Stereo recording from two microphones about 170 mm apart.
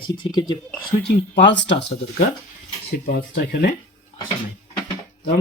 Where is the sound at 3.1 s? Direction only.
60° left (ahead or behind).